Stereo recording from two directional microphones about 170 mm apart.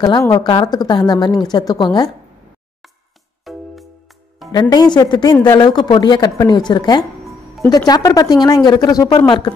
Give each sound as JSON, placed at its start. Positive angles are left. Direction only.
{"t": 0.0, "sound": "speech", "side_deg": 20}
{"t": 3.4, "sound": "music", "side_deg": 0}
{"t": 4.5, "sound": "speech", "side_deg": 25}
{"t": 7.2, "sound": "music", "side_deg": 0}
{"t": 7.7, "sound": "speech", "side_deg": 20}